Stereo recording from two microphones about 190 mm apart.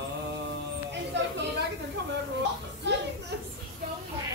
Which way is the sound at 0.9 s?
65° right (ahead or behind).